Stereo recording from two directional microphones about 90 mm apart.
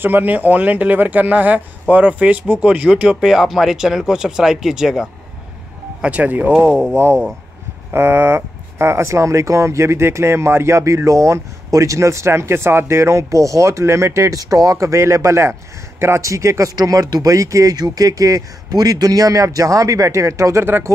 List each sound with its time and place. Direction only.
0.0 s speech: 20° right (ahead or behind)